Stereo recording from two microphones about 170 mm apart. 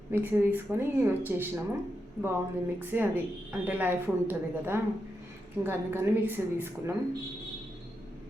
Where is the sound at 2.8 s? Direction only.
10° right (ahead or behind).